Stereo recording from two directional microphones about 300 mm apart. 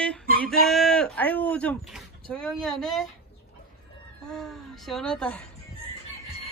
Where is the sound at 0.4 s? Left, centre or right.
Centre.